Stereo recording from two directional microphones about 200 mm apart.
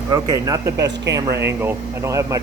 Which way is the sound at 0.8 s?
60° right (ahead or behind).